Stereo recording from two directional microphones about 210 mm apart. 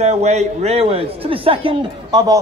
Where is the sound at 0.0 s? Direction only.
30° right (ahead or behind).